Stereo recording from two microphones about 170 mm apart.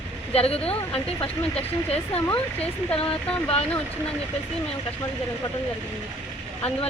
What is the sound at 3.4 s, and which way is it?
Speech, 35° left (ahead or behind).